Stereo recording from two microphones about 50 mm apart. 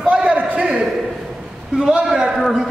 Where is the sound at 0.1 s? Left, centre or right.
Right.